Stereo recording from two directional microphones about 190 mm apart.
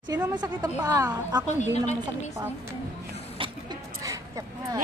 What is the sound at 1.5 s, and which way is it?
Speech, 35° left (ahead or behind).